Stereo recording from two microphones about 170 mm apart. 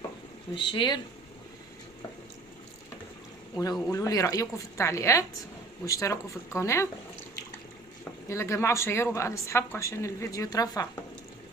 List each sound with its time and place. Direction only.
0.5 s a woman's voice: 30° left (ahead or behind)
3.6 s a woman's voice: 25° left (ahead or behind)
8.3 s a woman's voice: 15° left (ahead or behind)